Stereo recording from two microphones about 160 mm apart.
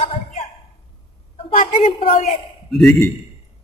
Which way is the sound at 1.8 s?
40° left (ahead or behind).